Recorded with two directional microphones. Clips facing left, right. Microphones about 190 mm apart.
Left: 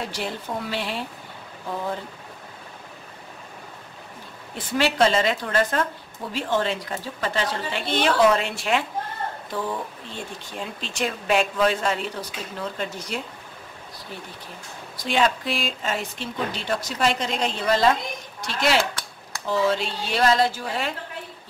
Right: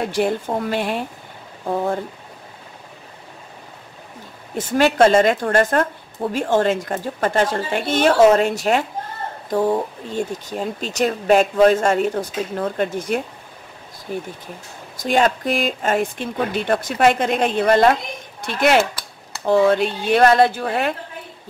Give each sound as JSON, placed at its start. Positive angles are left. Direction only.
{"t": 0.0, "sound": "a woman's voice", "side_deg": -50}
{"t": 4.6, "sound": "a woman's voice", "side_deg": -50}